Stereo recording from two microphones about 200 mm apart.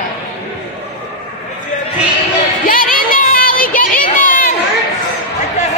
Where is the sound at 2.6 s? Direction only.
45° left (ahead or behind).